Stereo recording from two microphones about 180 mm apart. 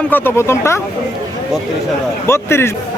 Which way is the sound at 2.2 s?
15° left (ahead or behind).